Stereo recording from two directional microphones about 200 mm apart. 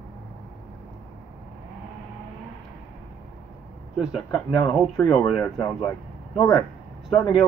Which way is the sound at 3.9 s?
Centre (ahead or behind).